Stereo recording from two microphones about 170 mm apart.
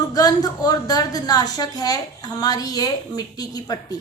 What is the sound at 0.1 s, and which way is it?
A woman's voice, 20° left (ahead or behind).